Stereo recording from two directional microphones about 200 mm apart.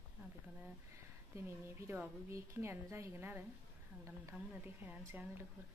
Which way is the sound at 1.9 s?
10° right (ahead or behind).